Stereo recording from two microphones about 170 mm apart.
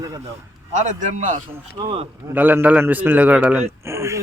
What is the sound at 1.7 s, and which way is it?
Speech, 30° right (ahead or behind).